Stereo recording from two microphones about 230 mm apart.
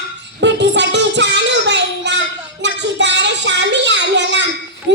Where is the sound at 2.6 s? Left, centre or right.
Right.